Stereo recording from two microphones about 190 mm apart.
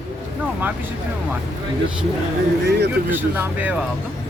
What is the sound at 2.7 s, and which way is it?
Speech, 60° right (ahead or behind).